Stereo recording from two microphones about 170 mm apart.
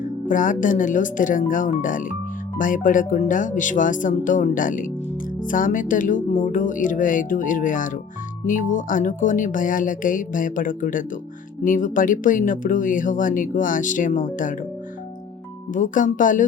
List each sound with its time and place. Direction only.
0.3 s speech: 50° left (ahead or behind)
15.7 s speech: 50° left (ahead or behind)